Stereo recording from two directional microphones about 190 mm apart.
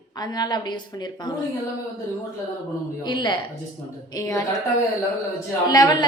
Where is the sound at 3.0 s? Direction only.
25° left (ahead or behind).